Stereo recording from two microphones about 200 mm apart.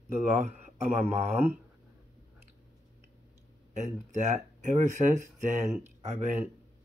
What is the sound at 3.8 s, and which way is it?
Speech, 35° right (ahead or behind).